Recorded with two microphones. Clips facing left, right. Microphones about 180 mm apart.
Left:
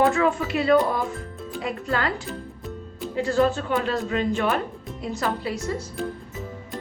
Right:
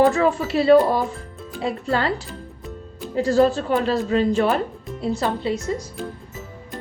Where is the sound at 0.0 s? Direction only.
35° right (ahead or behind).